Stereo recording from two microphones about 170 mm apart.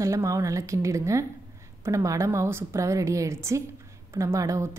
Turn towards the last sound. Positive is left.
turn(degrees=-20)  # may be behind; listen again after turning